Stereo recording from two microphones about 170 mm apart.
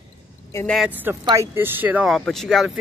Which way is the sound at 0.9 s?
10° right (ahead or behind).